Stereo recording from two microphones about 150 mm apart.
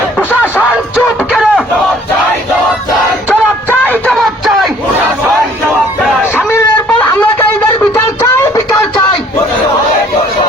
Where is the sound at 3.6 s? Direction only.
10° left (ahead or behind).